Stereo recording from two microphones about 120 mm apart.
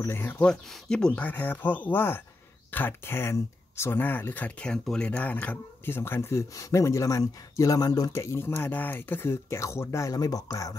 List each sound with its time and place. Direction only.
0.0 s speech: 20° left (ahead or behind)